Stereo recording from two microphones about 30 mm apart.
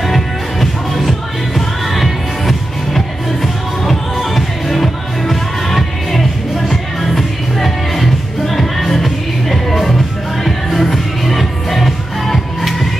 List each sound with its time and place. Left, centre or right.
0.0 s music: centre
3.8 s music: centre